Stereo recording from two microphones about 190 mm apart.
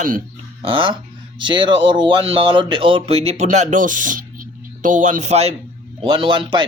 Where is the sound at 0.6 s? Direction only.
25° right (ahead or behind).